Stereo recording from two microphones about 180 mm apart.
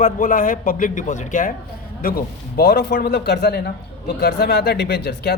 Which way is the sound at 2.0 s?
55° left (ahead or behind).